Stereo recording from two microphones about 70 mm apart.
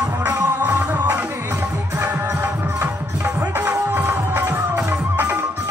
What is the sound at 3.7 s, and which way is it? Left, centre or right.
Music, right.